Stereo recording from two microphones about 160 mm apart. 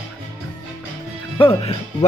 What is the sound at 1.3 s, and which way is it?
Speech, 35° left (ahead or behind).